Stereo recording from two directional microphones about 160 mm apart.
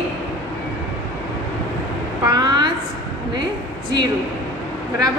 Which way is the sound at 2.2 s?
25° right (ahead or behind).